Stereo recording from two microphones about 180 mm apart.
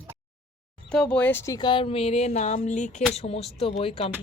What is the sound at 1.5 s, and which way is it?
Speech, 25° left (ahead or behind).